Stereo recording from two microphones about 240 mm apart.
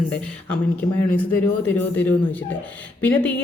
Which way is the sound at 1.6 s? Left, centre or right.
Centre.